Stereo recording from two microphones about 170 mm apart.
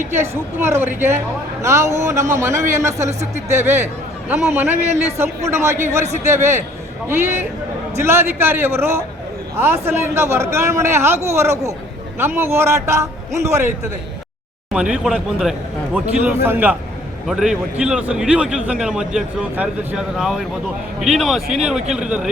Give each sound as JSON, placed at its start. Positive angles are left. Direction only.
{"t": 0.1, "sound": "a man's voice", "side_deg": -15}
{"t": 14.7, "sound": "a man's voice", "side_deg": -5}